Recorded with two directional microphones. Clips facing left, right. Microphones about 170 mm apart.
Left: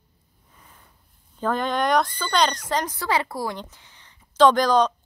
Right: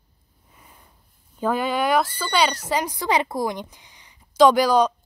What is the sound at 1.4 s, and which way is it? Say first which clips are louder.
A woman's voice: right 1 dB; 10° right (ahead or behind).